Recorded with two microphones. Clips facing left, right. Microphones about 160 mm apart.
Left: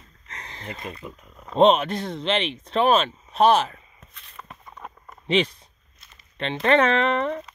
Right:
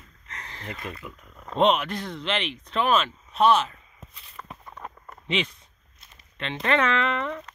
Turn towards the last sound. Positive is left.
turn(degrees=35)  # may be behind; listen again after turning